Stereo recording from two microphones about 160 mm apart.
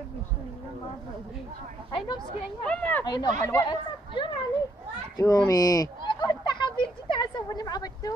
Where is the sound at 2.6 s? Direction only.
10° left (ahead or behind).